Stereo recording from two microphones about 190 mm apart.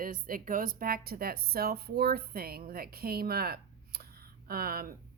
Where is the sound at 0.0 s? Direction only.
45° right (ahead or behind).